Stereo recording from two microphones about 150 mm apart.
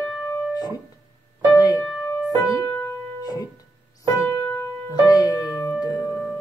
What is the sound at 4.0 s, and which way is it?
Keyboard, 20° left (ahead or behind).